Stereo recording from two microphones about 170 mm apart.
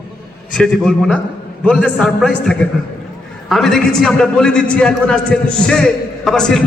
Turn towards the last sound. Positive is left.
turn(degrees=5)  # may be behind; listen again after turning